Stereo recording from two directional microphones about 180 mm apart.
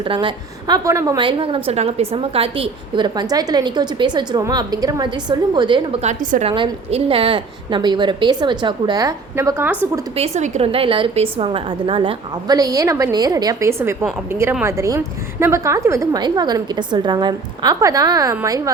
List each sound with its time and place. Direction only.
0.0 s a woman's voice: 25° right (ahead or behind)
10.2 s a woman's voice: 35° right (ahead or behind); by 18.7 s 20° right (ahead or behind)